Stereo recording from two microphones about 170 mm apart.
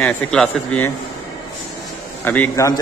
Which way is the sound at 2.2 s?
10° left (ahead or behind).